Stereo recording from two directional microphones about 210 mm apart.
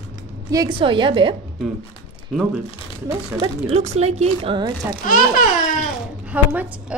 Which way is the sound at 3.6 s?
30° right (ahead or behind).